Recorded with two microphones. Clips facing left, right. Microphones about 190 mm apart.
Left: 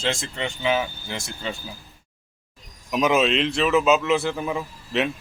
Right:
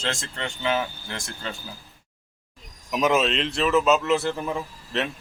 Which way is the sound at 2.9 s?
Centre (ahead or behind).